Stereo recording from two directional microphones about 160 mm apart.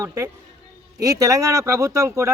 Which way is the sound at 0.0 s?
15° right (ahead or behind).